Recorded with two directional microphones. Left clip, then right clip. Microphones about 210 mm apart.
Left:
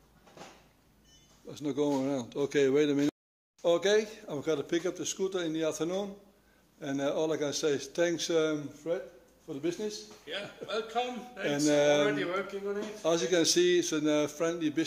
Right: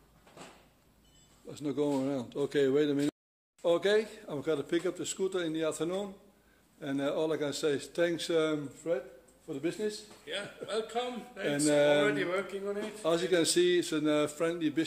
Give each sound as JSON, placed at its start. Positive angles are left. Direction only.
{"t": 1.5, "sound": "a man's voice", "side_deg": 5}
{"t": 10.2, "sound": "a man's voice", "side_deg": -20}
{"t": 11.4, "sound": "a man's voice", "side_deg": 15}
{"t": 12.1, "sound": "a man's voice", "side_deg": -25}
{"t": 13.0, "sound": "a man's voice", "side_deg": 10}